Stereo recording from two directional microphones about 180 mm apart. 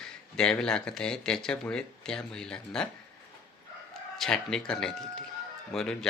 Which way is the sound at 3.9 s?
Centre (ahead or behind).